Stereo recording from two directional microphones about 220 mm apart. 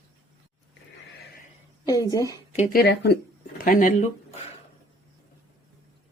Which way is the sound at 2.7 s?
45° left (ahead or behind).